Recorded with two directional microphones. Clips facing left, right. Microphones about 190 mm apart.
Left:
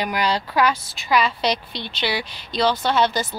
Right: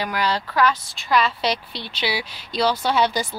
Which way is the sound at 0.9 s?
Centre (ahead or behind).